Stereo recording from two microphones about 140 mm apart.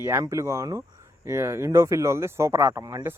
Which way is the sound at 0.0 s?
20° right (ahead or behind).